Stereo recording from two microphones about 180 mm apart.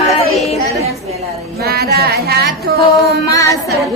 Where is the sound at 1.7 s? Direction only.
60° right (ahead or behind).